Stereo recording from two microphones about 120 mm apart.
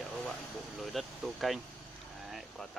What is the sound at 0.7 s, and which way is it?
Speech, centre (ahead or behind).